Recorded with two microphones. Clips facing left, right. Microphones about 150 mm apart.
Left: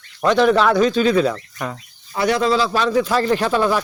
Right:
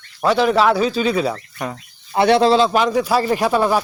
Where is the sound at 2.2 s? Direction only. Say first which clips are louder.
Right 4 dB; 30° right (ahead or behind); by 3.8 s 10° right (ahead or behind).